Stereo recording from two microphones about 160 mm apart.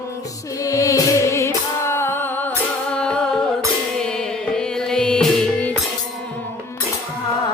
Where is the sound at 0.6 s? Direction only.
20° left (ahead or behind).